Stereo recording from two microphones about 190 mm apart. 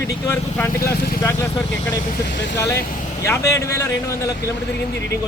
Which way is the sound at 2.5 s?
15° left (ahead or behind).